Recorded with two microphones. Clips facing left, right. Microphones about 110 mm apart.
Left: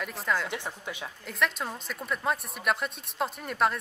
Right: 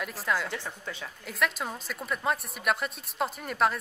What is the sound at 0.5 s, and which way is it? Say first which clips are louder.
Speech: left 1 dB; 15° left (ahead or behind).